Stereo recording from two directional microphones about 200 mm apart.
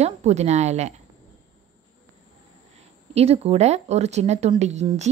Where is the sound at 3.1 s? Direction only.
30° right (ahead or behind).